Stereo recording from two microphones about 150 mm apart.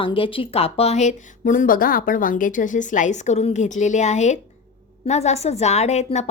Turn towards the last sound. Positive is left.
turn(degrees=50)  # may be behind; listen again after turning